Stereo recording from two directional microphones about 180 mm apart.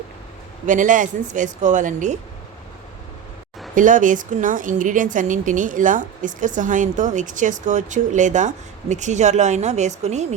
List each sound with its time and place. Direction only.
0.6 s a woman's voice: 45° right (ahead or behind)
3.8 s a woman's voice: 45° right (ahead or behind)